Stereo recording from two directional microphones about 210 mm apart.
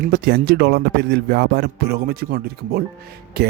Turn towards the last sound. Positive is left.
turn(degrees=-50)  # may be behind; listen again after turning